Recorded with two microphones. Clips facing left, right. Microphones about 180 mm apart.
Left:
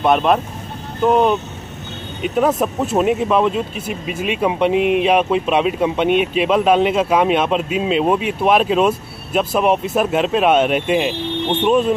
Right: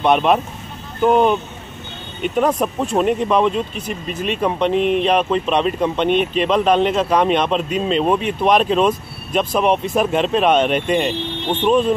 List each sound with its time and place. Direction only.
0.0 s speech: centre (ahead or behind)